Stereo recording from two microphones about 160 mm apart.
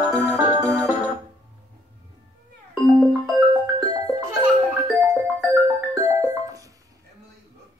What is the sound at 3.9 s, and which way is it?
Music, 20° right (ahead or behind).